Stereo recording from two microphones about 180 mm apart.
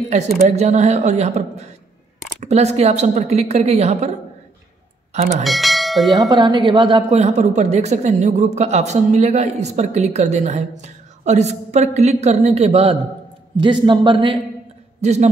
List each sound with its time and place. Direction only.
0.3 s speech: 40° right (ahead or behind)
5.4 s speech: centre (ahead or behind)
6.1 s a woman's voice: 25° right (ahead or behind)
7.1 s a woman's voice: 40° right (ahead or behind)